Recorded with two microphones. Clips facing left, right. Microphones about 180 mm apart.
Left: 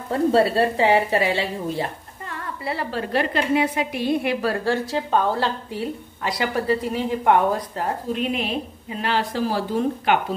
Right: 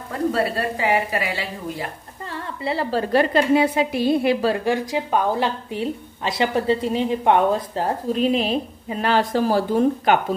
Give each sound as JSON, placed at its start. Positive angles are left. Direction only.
{"t": 0.1, "sound": "speech", "side_deg": 30}
{"t": 2.2, "sound": "a woman's voice", "side_deg": -30}
{"t": 4.6, "sound": "a woman's voice", "side_deg": -15}
{"t": 8.1, "sound": "a woman's voice", "side_deg": -35}